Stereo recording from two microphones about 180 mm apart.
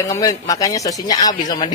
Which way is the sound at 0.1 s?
20° left (ahead or behind).